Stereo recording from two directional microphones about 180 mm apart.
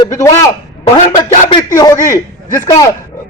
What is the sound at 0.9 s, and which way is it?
A man's voice, 30° left (ahead or behind).